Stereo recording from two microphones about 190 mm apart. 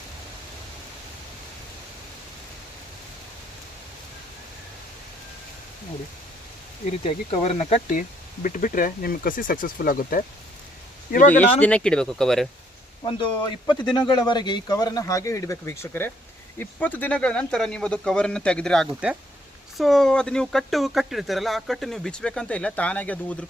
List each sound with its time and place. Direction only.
7.0 s speech: 30° left (ahead or behind); by 10.2 s 50° left (ahead or behind)
11.3 s speech: 10° left (ahead or behind)
13.1 s speech: 25° left (ahead or behind); by 23.5 s 5° left (ahead or behind)